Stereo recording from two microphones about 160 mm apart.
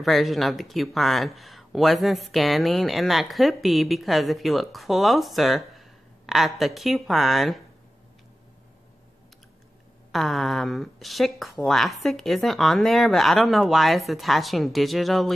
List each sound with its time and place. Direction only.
0.0 s speech: centre (ahead or behind)
10.1 s speech: centre (ahead or behind)